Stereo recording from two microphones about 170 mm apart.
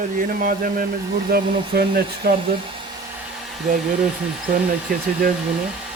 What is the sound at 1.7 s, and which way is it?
Speech, 65° right (ahead or behind).